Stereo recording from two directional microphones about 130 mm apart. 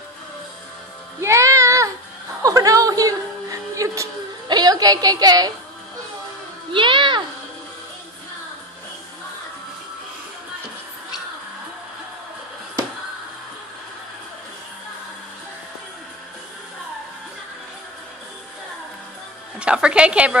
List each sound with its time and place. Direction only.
1.2 s music: 20° right (ahead or behind)
6.7 s a sound: 40° right (ahead or behind)
19.6 s a woman's voice: 10° right (ahead or behind)